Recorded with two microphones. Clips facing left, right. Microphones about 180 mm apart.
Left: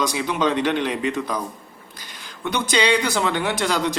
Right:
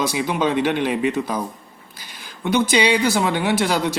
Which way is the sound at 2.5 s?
10° right (ahead or behind).